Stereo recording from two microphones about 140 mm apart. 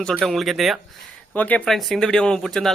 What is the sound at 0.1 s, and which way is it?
Speech, centre (ahead or behind).